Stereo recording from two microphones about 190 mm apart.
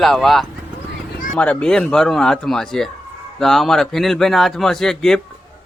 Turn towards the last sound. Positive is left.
turn(degrees=0)  # may be behind; listen again after turning